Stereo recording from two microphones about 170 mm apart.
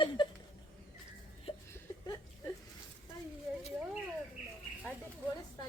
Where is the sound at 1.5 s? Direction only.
35° left (ahead or behind).